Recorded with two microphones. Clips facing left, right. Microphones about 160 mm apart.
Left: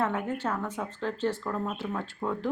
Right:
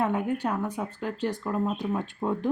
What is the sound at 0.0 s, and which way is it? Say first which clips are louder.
Speech: right 3 dB; 15° right (ahead or behind).